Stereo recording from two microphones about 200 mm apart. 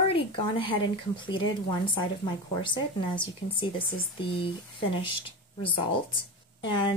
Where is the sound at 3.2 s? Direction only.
25° left (ahead or behind).